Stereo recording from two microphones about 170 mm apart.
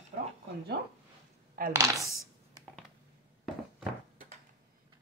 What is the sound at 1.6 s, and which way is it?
Chopping, 55° right (ahead or behind).